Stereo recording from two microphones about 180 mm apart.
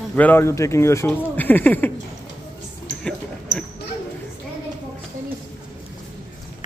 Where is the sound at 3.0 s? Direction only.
5° left (ahead or behind).